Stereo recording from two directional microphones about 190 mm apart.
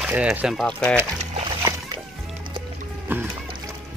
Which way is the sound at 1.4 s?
20° right (ahead or behind).